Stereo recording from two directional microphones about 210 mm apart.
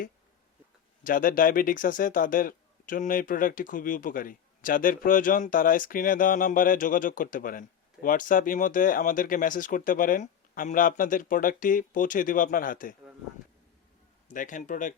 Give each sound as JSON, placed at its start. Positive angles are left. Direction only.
{"t": 1.0, "sound": "speech", "side_deg": 40}
{"t": 14.3, "sound": "speech", "side_deg": 40}